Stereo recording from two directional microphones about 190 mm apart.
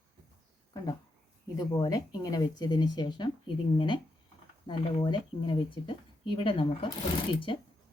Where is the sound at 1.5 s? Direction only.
20° left (ahead or behind).